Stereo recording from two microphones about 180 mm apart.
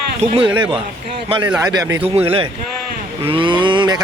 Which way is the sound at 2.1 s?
30° right (ahead or behind).